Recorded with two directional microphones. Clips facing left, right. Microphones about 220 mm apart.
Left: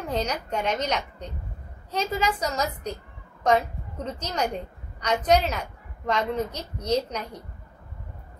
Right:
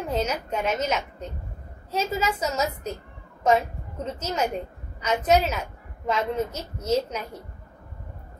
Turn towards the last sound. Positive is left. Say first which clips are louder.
# right 1 dB
turn(degrees=-5)  # may be behind; listen again after turning